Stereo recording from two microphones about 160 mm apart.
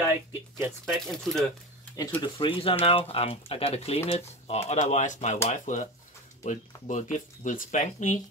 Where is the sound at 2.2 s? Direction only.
30° left (ahead or behind).